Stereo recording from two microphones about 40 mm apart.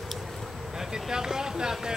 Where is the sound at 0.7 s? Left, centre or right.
Centre.